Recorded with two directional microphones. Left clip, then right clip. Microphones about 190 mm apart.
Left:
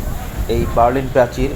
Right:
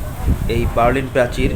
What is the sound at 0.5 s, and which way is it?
Speech, 5° left (ahead or behind).